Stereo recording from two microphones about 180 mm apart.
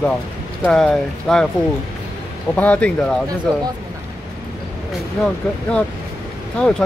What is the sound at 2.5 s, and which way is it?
Speech, 5° left (ahead or behind).